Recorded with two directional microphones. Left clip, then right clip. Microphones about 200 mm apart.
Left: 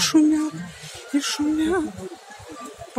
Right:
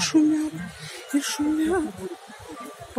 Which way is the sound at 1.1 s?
5° left (ahead or behind).